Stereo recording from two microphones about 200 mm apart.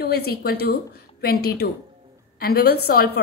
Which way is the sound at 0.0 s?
55° left (ahead or behind).